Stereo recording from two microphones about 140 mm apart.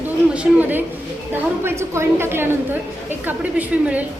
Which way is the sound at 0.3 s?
10° right (ahead or behind).